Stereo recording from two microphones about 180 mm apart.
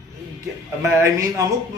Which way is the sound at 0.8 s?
15° right (ahead or behind).